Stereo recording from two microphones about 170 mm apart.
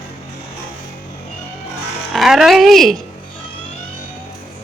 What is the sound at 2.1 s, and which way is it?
Speech, centre (ahead or behind).